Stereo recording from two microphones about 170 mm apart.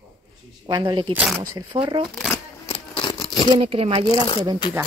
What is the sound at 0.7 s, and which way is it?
Speech, 25° right (ahead or behind).